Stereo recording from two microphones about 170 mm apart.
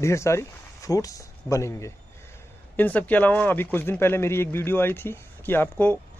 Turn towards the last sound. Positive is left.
turn(degrees=10)  # may be behind; listen again after turning